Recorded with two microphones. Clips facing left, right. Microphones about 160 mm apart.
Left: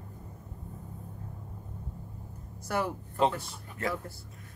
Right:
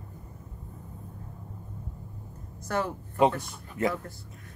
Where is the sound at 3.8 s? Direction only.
20° right (ahead or behind).